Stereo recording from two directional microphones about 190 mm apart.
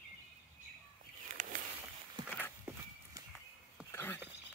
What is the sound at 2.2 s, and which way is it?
Horse, 25° right (ahead or behind).